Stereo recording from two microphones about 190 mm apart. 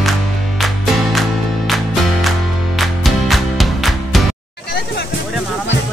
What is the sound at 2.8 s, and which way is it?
Music, centre (ahead or behind).